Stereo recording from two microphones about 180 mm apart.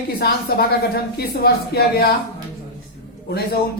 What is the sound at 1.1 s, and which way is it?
A man's voice, 60° left (ahead or behind).